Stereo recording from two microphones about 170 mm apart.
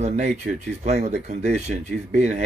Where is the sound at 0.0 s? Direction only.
45° right (ahead or behind).